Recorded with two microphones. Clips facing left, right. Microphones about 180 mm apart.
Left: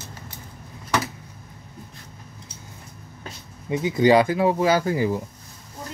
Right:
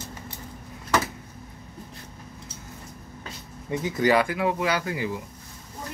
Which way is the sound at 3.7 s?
20° left (ahead or behind).